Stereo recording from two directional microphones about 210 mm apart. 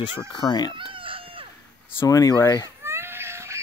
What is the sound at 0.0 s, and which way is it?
Speech, 20° left (ahead or behind).